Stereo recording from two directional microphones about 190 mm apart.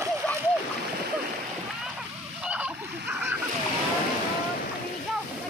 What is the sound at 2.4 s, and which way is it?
Splash, 5° right (ahead or behind).